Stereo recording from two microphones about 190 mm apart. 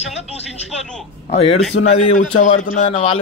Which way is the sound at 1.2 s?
30° left (ahead or behind).